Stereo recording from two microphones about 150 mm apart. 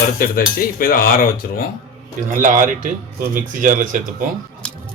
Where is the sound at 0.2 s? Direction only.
75° left (ahead or behind).